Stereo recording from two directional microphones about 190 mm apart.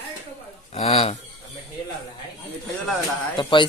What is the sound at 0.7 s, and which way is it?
Speech, 30° left (ahead or behind).